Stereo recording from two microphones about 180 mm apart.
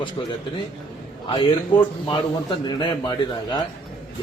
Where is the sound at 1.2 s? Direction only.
25° left (ahead or behind).